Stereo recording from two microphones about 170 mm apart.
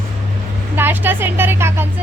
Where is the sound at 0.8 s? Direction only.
10° right (ahead or behind).